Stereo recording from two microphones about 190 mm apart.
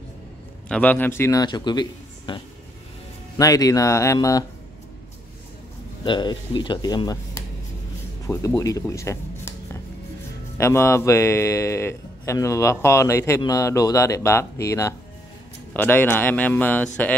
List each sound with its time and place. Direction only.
0.7 s a man's voice: 5° left (ahead or behind)
6.0 s speech: 25° left (ahead or behind)
10.6 s a man's voice: 15° left (ahead or behind)